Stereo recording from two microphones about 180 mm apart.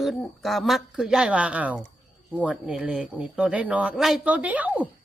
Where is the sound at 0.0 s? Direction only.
Centre (ahead or behind).